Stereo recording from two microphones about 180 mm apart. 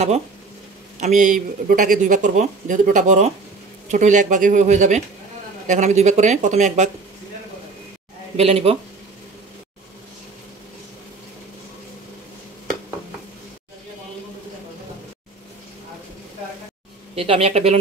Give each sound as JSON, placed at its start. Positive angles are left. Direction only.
{"t": 1.0, "sound": "speech", "side_deg": -45}
{"t": 8.4, "sound": "speech", "side_deg": -35}
{"t": 17.1, "sound": "speech", "side_deg": -30}